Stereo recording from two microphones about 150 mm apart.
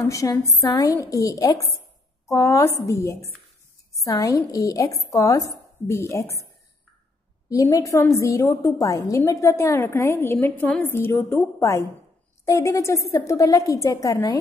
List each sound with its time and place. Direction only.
0.0 s speech: 20° left (ahead or behind)
7.4 s a woman's voice: 20° left (ahead or behind)